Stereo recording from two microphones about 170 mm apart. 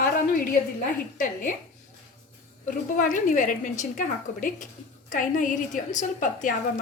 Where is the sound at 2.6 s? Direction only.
50° left (ahead or behind).